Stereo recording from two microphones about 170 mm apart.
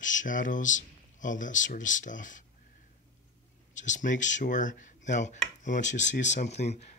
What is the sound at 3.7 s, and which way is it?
Speech, 45° left (ahead or behind).